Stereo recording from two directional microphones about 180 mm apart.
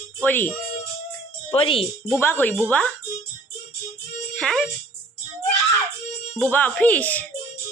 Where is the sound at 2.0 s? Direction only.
15° left (ahead or behind).